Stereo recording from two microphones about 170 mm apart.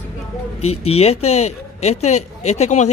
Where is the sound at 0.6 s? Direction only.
35° left (ahead or behind).